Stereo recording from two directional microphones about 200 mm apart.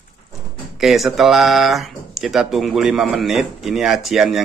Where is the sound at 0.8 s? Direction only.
Centre (ahead or behind).